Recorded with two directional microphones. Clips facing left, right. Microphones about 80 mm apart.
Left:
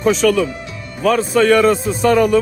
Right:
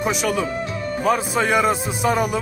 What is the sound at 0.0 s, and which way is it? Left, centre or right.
A man's voice, centre.